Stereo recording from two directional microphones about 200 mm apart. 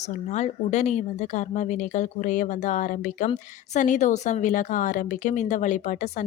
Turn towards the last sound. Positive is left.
turn(degrees=40)  # may be behind; listen again after turning